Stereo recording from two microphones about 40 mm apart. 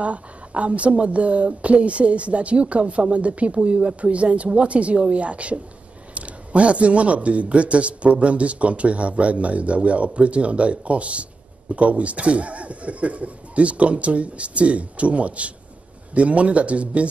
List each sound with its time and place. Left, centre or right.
0.0 s speech: right